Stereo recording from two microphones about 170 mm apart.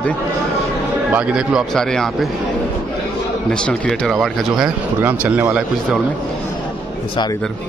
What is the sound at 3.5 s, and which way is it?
Speech, 5° left (ahead or behind).